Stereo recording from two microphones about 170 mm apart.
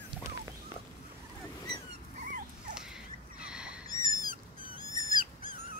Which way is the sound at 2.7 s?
5° right (ahead or behind).